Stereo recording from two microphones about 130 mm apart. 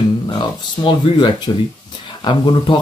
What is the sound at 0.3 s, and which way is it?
Speech, 40° left (ahead or behind).